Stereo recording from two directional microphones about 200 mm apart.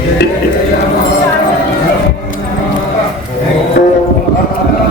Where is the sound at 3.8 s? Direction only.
60° left (ahead or behind).